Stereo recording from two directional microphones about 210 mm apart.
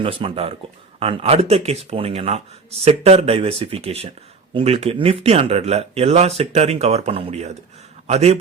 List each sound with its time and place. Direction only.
0.0 s speech: 25° right (ahead or behind)